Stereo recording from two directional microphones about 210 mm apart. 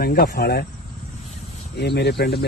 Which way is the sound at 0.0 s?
45° left (ahead or behind).